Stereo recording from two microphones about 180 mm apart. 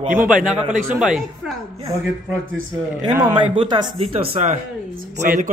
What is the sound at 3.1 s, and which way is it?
Speech, 20° right (ahead or behind).